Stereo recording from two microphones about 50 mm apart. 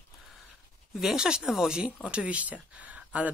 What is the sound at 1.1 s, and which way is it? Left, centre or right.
Speech, centre.